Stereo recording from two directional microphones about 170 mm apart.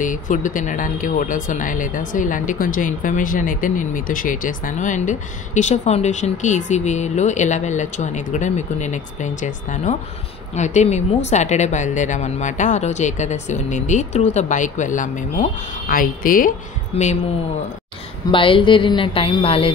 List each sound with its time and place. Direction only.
0.0 s speech: 50° left (ahead or behind)
16.9 s speech: 40° left (ahead or behind)
18.3 s speech: 30° left (ahead or behind)